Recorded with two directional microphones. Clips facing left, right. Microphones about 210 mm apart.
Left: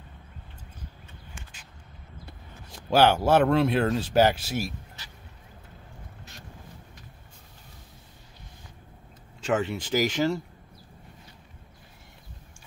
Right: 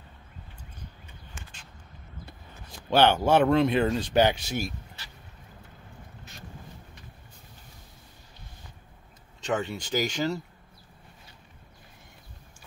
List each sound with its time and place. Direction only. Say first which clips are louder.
2.9 s speech: left 1 dB; 5° left (ahead or behind)
9.4 s speech: left 3 dB; 5° left (ahead or behind)